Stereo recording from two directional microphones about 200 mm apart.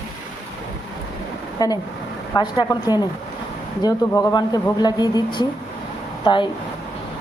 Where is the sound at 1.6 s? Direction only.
20° left (ahead or behind).